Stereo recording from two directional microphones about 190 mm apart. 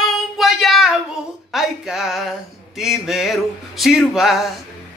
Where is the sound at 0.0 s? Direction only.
Centre (ahead or behind).